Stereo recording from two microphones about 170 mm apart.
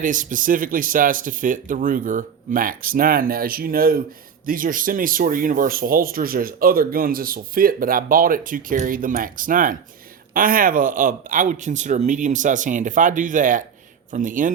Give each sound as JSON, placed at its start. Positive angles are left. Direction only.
{"t": 0.0, "sound": "speech", "side_deg": -50}